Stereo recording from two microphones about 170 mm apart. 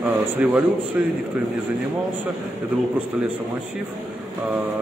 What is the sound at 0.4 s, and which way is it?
Speech, 5° right (ahead or behind).